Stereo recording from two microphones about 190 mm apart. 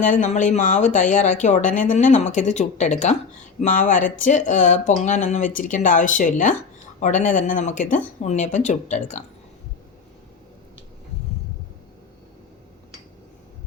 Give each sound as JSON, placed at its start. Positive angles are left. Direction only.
{"t": 0.0, "sound": "speech", "side_deg": 40}